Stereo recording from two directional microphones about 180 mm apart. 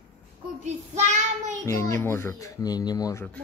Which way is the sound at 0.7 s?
40° right (ahead or behind).